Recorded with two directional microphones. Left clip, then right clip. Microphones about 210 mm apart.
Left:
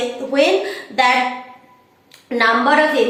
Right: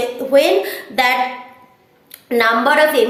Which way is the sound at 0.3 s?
55° right (ahead or behind).